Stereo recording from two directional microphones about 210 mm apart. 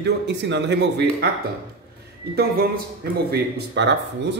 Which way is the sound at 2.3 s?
50° right (ahead or behind).